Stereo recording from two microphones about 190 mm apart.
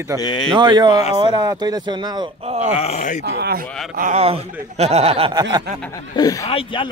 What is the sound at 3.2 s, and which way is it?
Speech, 55° right (ahead or behind).